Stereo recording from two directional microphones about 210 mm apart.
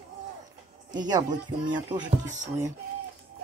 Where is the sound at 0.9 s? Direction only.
20° right (ahead or behind).